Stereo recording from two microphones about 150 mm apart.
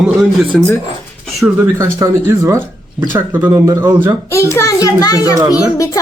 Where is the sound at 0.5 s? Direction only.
5° left (ahead or behind).